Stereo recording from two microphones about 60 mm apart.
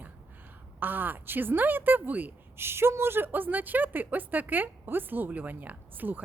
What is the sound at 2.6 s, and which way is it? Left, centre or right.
A woman's voice, right.